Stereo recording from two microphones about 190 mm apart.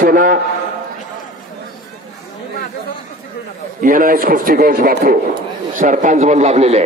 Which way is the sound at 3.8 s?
45° right (ahead or behind).